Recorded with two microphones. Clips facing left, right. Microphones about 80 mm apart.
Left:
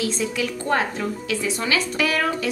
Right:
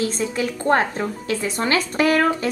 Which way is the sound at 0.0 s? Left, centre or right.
Right.